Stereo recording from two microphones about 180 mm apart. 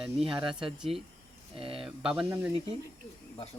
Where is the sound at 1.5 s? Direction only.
30° right (ahead or behind).